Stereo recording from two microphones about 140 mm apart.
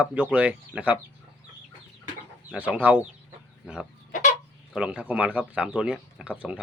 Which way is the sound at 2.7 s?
10° right (ahead or behind).